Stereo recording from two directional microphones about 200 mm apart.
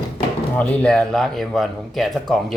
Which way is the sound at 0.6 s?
5° left (ahead or behind).